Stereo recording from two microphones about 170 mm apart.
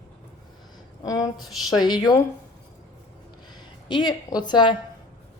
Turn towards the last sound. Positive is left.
turn(degrees=25)  # may be behind; listen again after turning